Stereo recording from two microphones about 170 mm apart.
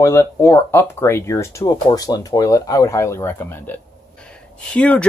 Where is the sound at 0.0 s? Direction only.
15° left (ahead or behind).